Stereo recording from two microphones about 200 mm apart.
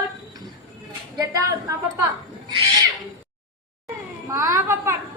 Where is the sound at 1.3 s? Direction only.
15° right (ahead or behind).